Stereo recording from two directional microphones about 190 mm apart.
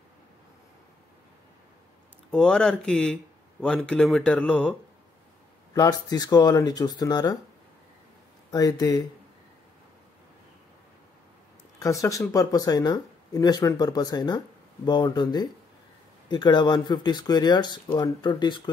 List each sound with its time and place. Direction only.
2.3 s speech: 5° left (ahead or behind)
5.8 s speech: 20° left (ahead or behind)
8.5 s speech: 20° left (ahead or behind)
11.8 s speech: 15° left (ahead or behind)